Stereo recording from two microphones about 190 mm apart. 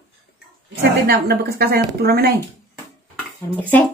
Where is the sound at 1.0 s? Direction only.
55° right (ahead or behind).